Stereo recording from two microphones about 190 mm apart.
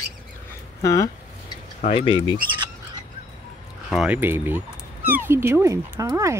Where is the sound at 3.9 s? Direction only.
5° right (ahead or behind).